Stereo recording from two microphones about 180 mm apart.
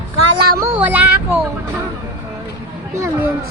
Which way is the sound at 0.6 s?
10° right (ahead or behind).